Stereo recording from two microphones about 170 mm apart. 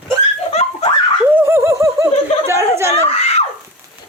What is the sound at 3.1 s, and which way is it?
Screaming, 35° left (ahead or behind).